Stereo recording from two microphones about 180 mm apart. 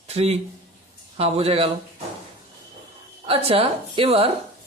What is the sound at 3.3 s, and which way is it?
Speech, 30° right (ahead or behind).